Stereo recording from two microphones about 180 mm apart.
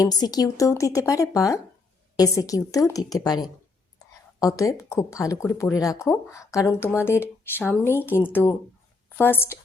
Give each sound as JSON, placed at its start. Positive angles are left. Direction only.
{"t": 0.0, "sound": "a woman's voice", "side_deg": 20}